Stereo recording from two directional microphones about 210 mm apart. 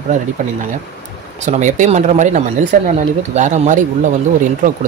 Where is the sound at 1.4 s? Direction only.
35° right (ahead or behind).